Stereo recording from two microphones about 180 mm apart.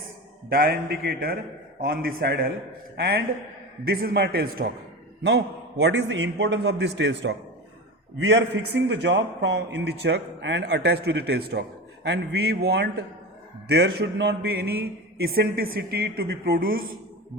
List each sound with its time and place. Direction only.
0.5 s a man's voice: 55° right (ahead or behind)
5.2 s a man's voice: 70° right (ahead or behind)
8.2 s a man's voice: 90° right
8.9 s a man's voice: 75° right (ahead or behind); by 16.8 s 55° right (ahead or behind)